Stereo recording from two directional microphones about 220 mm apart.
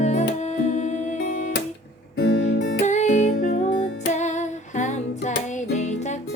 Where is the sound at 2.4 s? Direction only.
55° left (ahead or behind).